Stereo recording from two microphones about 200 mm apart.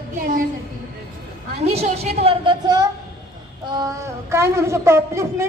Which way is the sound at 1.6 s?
30° right (ahead or behind).